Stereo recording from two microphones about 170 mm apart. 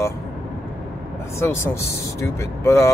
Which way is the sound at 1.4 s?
15° left (ahead or behind).